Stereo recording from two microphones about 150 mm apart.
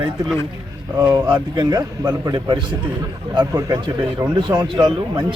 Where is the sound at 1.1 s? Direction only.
25° right (ahead or behind).